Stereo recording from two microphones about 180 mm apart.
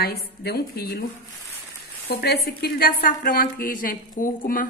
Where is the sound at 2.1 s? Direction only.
60° left (ahead or behind).